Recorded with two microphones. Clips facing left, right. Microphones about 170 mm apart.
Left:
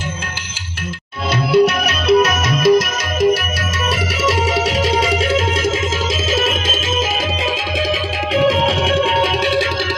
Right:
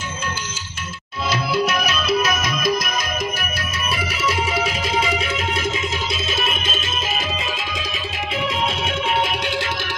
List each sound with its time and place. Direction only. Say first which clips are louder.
1.3 s music: left 8 dB; 65° left (ahead or behind); by 6.8 s 90° left
8.4 s music: left 10 dB; 90° left